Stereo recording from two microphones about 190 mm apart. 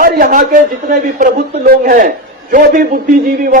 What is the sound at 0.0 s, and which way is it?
A man's voice, 45° right (ahead or behind).